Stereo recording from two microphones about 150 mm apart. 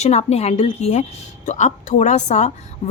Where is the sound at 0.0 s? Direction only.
45° left (ahead or behind).